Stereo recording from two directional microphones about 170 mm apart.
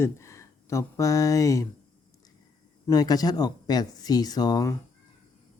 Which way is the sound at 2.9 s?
20° left (ahead or behind).